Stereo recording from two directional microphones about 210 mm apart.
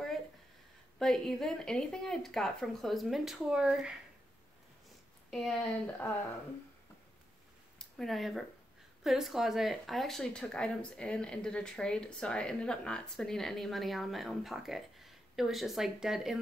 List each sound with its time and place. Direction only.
0.9 s speech: centre (ahead or behind)
5.3 s speech: centre (ahead or behind)
7.8 s speech: centre (ahead or behind)